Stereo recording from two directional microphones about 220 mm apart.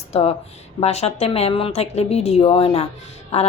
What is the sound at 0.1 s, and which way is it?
A woman's voice, 25° left (ahead or behind).